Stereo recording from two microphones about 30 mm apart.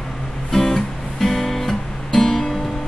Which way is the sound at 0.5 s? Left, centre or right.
Centre.